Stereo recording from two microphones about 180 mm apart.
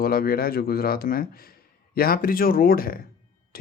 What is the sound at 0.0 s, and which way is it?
Speech, 55° left (ahead or behind).